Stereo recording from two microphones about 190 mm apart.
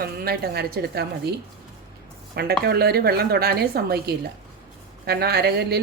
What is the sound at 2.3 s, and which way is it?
A woman's voice, 55° right (ahead or behind).